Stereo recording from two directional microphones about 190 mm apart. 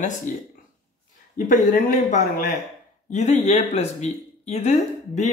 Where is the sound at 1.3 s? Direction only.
40° left (ahead or behind).